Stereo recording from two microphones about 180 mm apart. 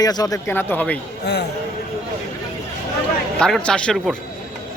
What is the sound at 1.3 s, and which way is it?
Speech, 70° left (ahead or behind).